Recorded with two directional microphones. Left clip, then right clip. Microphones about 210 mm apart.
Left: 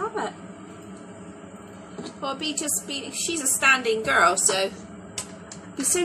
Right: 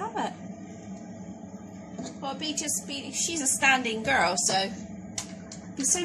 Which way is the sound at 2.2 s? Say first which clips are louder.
Left 4 dB; 15° left (ahead or behind).